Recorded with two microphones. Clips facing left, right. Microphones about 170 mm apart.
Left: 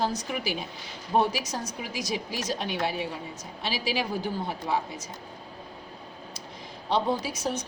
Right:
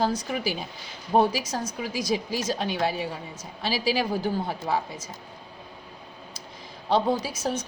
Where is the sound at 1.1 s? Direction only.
40° right (ahead or behind).